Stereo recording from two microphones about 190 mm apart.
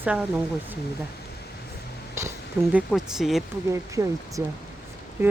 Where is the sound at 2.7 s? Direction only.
Centre (ahead or behind).